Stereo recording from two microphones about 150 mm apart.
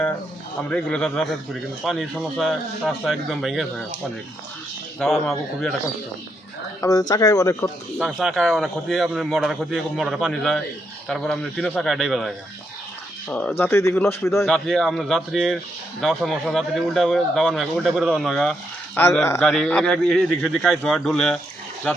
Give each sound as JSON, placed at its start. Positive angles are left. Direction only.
{"t": 0.7, "sound": "a man's voice", "side_deg": 5}
{"t": 4.9, "sound": "a man's voice", "side_deg": 5}
{"t": 7.1, "sound": "speech", "side_deg": 25}
{"t": 7.9, "sound": "a man's voice", "side_deg": 0}
{"t": 14.4, "sound": "a man's voice", "side_deg": 0}
{"t": 18.9, "sound": "speech", "side_deg": 15}
{"t": 19.4, "sound": "a man's voice", "side_deg": 5}